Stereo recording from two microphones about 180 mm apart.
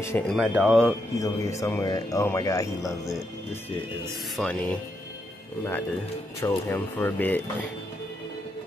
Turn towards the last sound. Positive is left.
turn(degrees=10)  # may be behind; listen again after turning